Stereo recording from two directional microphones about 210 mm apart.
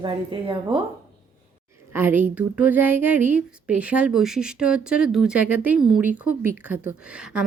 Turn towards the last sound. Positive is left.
turn(degrees=-5)  # may be behind; listen again after turning